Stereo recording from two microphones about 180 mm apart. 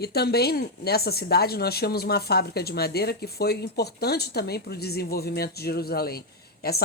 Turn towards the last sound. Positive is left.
turn(degrees=60)  # may be behind; listen again after turning